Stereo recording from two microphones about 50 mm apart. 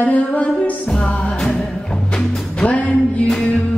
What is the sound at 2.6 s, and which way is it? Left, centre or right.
Music, left.